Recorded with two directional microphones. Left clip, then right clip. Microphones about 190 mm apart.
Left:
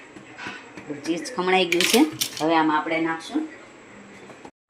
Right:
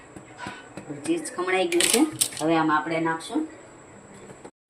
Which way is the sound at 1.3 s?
40° left (ahead or behind).